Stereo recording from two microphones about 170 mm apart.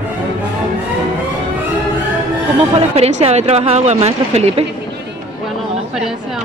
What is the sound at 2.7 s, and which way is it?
Speech, 35° right (ahead or behind).